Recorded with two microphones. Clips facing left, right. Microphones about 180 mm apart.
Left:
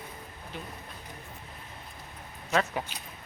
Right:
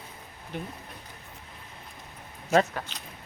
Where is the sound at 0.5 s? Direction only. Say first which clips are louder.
Right 5 dB; 55° right (ahead or behind).